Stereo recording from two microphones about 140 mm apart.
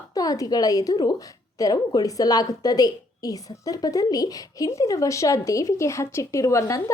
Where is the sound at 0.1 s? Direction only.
25° left (ahead or behind).